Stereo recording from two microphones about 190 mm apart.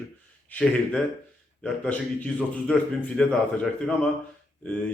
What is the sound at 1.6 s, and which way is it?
A man's voice, 5° left (ahead or behind).